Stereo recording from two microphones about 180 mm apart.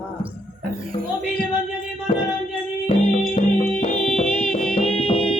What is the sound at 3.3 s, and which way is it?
Music, 35° left (ahead or behind).